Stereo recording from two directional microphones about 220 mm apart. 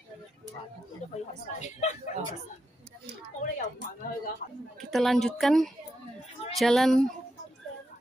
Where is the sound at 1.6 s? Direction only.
35° left (ahead or behind).